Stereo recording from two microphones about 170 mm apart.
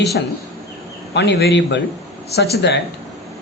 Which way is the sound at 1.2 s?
80° left.